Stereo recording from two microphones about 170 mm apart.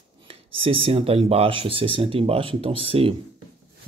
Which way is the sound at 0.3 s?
30° right (ahead or behind).